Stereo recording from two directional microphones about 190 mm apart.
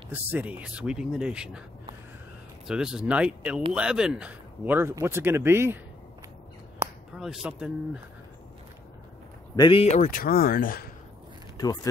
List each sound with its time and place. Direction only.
0.1 s speech: 10° right (ahead or behind)
2.6 s speech: 5° right (ahead or behind)
7.2 s speech: centre (ahead or behind)
9.6 s speech: 30° left (ahead or behind); by 10.9 s 50° left (ahead or behind)
11.5 s speech: 20° left (ahead or behind)